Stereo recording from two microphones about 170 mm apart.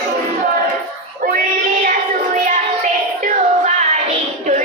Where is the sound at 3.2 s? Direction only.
45° right (ahead or behind).